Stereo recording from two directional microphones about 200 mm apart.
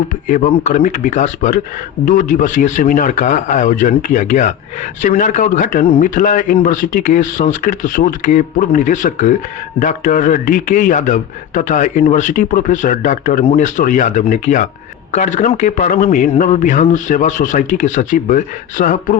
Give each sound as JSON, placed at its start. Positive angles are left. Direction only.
{"t": 0.3, "sound": "a man's voice", "side_deg": 40}